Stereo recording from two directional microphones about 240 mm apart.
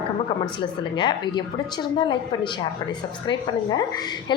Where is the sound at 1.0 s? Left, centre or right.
Centre.